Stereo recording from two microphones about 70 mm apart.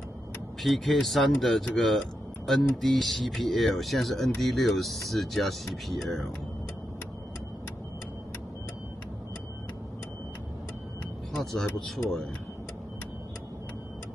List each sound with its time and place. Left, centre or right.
0.6 s speech: centre
11.3 s speech: centre